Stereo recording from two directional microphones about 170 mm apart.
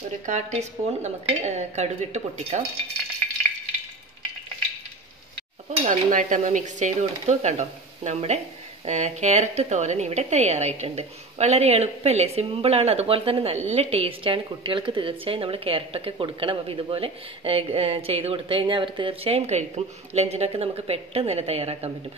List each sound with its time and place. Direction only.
0.3 s speech: 40° right (ahead or behind)
5.9 s a woman's voice: 50° right (ahead or behind)